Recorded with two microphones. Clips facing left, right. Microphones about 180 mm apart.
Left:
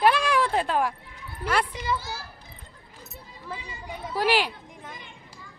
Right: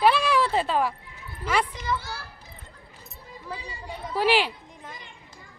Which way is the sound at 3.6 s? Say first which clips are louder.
Right 1 dB; 35° right (ahead or behind).